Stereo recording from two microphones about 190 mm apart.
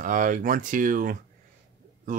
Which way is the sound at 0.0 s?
45° right (ahead or behind).